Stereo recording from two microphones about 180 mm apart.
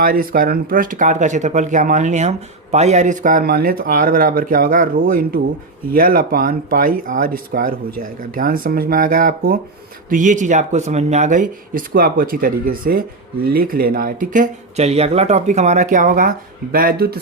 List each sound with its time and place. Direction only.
0.0 s speech: 50° right (ahead or behind)